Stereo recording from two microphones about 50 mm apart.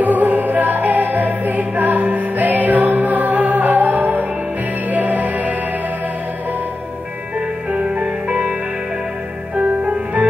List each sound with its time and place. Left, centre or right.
0.0 s music: right
7.7 s music: right
9.6 s music: right